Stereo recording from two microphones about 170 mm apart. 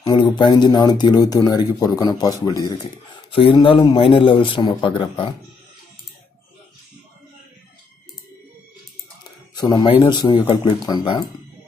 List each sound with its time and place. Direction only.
0.0 s speech: 25° left (ahead or behind)
9.6 s speech: 25° left (ahead or behind)